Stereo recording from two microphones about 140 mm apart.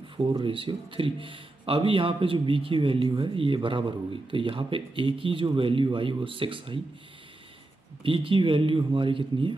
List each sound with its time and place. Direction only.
0.2 s speech: 35° right (ahead or behind)
8.0 s speech: 40° right (ahead or behind)